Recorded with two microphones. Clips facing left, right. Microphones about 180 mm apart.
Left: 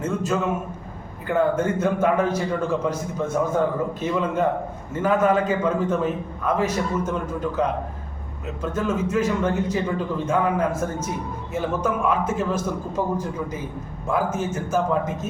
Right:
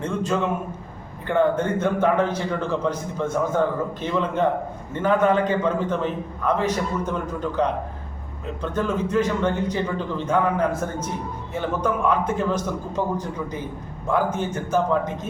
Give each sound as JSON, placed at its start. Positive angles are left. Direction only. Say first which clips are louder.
{"t": 0.0, "sound": "a man's voice", "louder": "even", "side_deg": 5}